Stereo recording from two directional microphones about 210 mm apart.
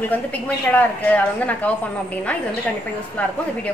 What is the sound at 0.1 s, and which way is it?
A woman's voice, 10° left (ahead or behind).